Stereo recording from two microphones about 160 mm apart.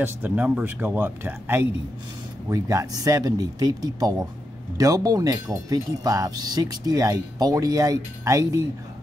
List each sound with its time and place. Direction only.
0.0 s speech: 10° right (ahead or behind)